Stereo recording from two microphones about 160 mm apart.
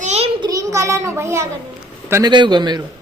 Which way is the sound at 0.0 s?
45° right (ahead or behind).